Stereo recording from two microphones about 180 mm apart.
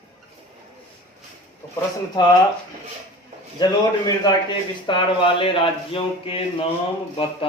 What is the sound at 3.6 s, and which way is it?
A man's voice, 20° left (ahead or behind).